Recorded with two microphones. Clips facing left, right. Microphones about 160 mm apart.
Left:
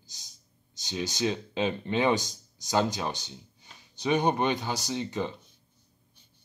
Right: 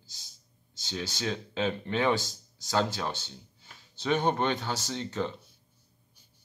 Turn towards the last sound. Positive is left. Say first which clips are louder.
# left 1 dB
turn(degrees=15)  # may be behind; listen again after turning